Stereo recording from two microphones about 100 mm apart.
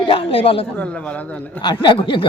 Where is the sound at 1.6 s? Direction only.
50° left (ahead or behind).